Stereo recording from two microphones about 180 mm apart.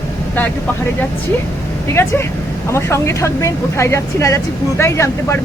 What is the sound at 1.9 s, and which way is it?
Speech, 15° left (ahead or behind).